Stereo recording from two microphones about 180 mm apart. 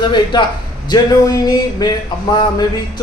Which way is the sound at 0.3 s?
25° left (ahead or behind).